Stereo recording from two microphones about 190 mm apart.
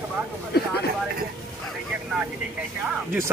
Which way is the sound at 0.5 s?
60° left (ahead or behind).